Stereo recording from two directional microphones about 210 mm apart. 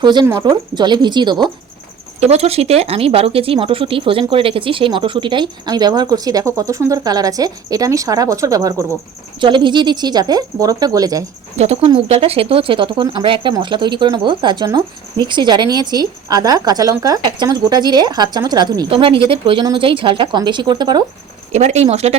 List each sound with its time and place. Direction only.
0.0 s speech: 20° right (ahead or behind)
11.5 s speech: 30° right (ahead or behind)
21.5 s speech: 30° right (ahead or behind)